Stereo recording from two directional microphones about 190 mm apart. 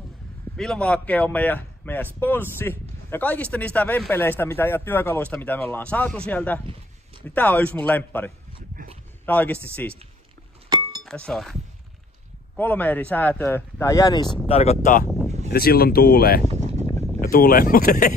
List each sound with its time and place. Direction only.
0.6 s speech: 5° left (ahead or behind)
6.6 s a sound: 30° right (ahead or behind)
7.2 s speech: 10° left (ahead or behind)
11.1 s speech: 5° left (ahead or behind)
12.5 s speech: 10° left (ahead or behind)
14.5 s speech: 35° left (ahead or behind)
15.0 s a sound: centre (ahead or behind)
15.5 s speech: 55° left (ahead or behind)
16.4 s a sound: 35° right (ahead or behind)
17.2 s speech: 50° left (ahead or behind)